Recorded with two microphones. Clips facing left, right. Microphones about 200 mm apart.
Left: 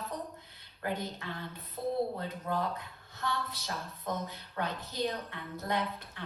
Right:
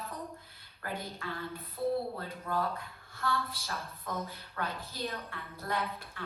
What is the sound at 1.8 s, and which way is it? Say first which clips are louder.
Speech: right 2 dB; 45° left (ahead or behind).